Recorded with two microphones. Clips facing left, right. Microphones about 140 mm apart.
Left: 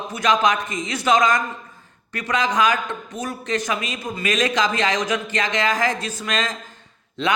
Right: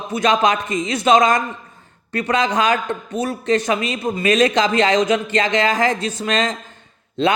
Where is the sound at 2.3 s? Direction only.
30° right (ahead or behind).